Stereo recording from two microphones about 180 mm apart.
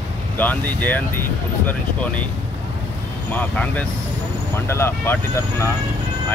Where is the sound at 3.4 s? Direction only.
10° left (ahead or behind).